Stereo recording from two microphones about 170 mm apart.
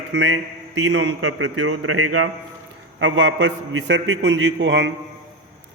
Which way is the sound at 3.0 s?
90° right.